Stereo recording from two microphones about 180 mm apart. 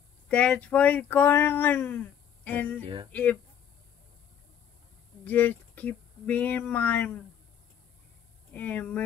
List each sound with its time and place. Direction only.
0.3 s speech: 5° left (ahead or behind)
2.8 s a sound: 30° right (ahead or behind)
3.1 s speech: 10° left (ahead or behind)
5.2 s speech: 10° left (ahead or behind)
8.5 s speech: 10° left (ahead or behind)